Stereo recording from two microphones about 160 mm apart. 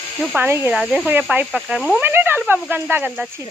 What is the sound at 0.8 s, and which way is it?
Speech, centre (ahead or behind).